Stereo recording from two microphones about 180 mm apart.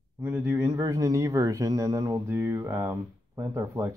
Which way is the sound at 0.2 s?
10° right (ahead or behind).